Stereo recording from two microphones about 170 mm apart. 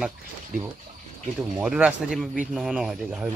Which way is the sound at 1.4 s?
5° right (ahead or behind).